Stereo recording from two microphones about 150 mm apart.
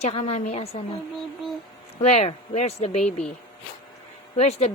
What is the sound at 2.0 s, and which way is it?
A woman's voice, 45° left (ahead or behind).